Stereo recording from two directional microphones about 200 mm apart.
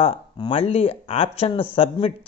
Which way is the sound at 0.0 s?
25° left (ahead or behind).